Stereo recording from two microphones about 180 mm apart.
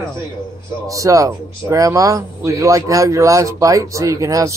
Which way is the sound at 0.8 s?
20° right (ahead or behind).